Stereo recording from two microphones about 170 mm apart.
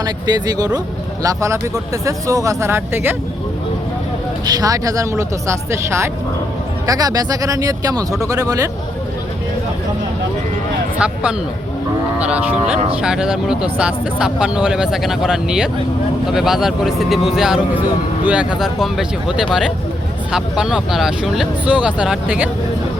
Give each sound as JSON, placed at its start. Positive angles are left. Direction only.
{"t": 0.0, "sound": "speech", "side_deg": -25}
{"t": 4.4, "sound": "speech", "side_deg": -20}
{"t": 10.9, "sound": "speech", "side_deg": -5}